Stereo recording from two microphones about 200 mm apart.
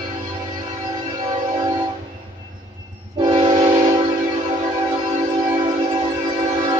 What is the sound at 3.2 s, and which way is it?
Train, 25° right (ahead or behind).